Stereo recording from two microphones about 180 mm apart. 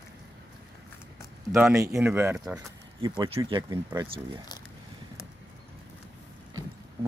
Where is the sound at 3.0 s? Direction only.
30° right (ahead or behind).